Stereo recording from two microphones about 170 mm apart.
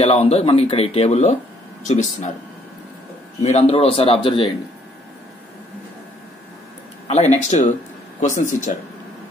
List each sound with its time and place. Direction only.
0.0 s speech: 35° left (ahead or behind)
3.4 s speech: 40° left (ahead or behind)
7.1 s speech: 40° left (ahead or behind)